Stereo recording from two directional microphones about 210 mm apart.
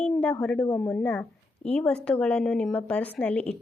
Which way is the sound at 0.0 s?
5° left (ahead or behind).